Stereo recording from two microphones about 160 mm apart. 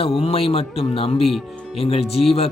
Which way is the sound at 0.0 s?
35° left (ahead or behind).